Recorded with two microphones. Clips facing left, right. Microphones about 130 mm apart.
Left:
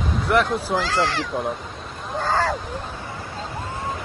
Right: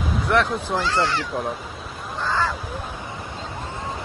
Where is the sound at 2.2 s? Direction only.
45° left (ahead or behind).